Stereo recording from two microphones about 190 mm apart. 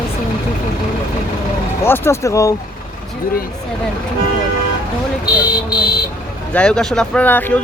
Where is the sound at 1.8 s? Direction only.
10° left (ahead or behind).